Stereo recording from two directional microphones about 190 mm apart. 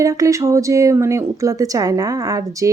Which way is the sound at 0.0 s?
15° right (ahead or behind).